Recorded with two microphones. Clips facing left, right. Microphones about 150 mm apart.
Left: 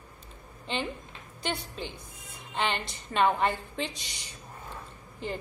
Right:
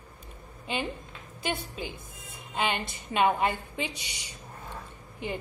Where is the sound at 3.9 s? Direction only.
65° right (ahead or behind).